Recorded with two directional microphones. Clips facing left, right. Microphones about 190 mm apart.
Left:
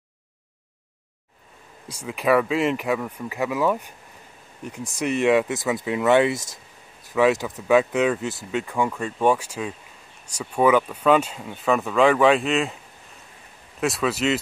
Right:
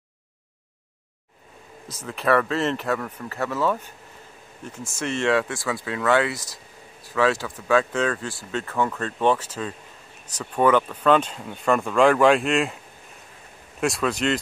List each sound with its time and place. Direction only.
2.0 s speech: 10° left (ahead or behind)
13.7 s speech: centre (ahead or behind)